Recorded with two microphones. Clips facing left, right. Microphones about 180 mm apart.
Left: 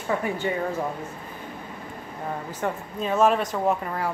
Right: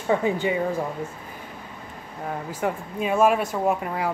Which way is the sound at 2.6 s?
10° right (ahead or behind).